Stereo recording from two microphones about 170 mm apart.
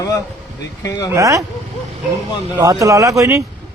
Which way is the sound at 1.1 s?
20° right (ahead or behind).